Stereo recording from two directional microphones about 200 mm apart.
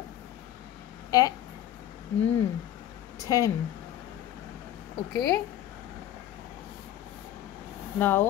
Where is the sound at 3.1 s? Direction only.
15° left (ahead or behind).